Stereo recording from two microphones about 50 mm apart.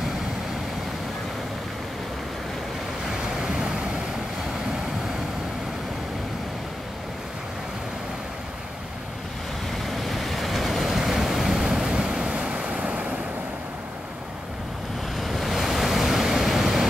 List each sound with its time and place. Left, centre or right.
3.1 s waves: centre
9.7 s vehicle: centre
15.1 s waves: centre